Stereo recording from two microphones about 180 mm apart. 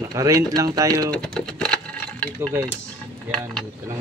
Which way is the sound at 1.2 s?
5° left (ahead or behind).